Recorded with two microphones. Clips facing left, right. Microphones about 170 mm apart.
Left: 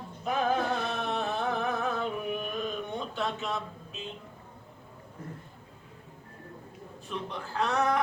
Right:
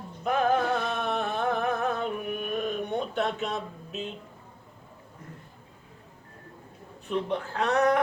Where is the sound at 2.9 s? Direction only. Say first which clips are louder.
Right 5 dB; 60° right (ahead or behind).